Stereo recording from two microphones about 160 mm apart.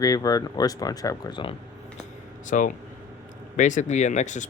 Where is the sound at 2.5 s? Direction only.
55° left (ahead or behind).